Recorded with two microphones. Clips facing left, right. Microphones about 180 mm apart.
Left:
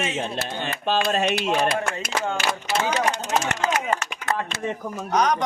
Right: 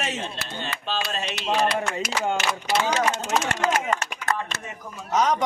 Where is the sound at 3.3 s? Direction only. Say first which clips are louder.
Even; 30° left (ahead or behind).